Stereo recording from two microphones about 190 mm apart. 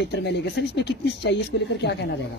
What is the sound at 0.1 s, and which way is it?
Speech, 65° left (ahead or behind).